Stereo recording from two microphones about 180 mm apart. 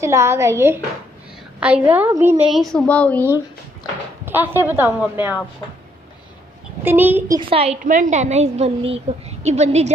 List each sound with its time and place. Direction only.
0.0 s a woman's voice: 15° right (ahead or behind); by 3.3 s 10° left (ahead or behind)
4.3 s a woman's voice: 10° right (ahead or behind)
6.8 s a woman's voice: 10° right (ahead or behind)
7.3 s a woman's voice: 30° right (ahead or behind)